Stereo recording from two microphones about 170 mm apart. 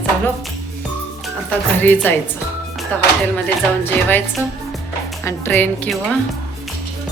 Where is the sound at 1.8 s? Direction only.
10° left (ahead or behind).